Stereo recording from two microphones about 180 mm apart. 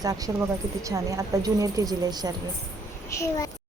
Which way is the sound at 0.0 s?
20° right (ahead or behind).